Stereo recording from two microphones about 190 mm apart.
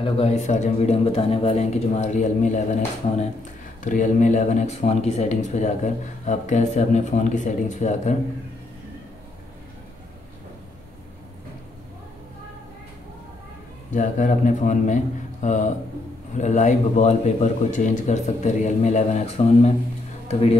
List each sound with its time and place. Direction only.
0.0 s a man's voice: 35° left (ahead or behind)
3.8 s a man's voice: 45° left (ahead or behind)
13.9 s a man's voice: 40° left (ahead or behind)